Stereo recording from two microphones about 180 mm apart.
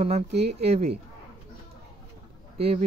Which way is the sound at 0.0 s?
35° right (ahead or behind).